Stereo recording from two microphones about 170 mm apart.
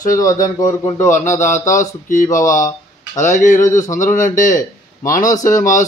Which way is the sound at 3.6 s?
20° left (ahead or behind).